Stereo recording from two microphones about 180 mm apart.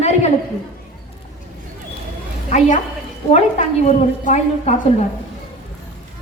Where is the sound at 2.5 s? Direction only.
40° left (ahead or behind).